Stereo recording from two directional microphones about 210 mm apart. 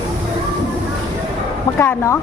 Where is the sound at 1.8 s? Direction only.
15° left (ahead or behind).